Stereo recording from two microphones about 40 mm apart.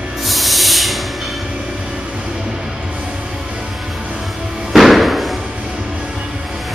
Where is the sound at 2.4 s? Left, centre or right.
Right.